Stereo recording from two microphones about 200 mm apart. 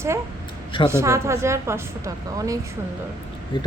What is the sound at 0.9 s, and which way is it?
A woman's voice, 15° right (ahead or behind).